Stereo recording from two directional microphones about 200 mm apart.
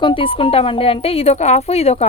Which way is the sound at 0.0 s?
25° left (ahead or behind).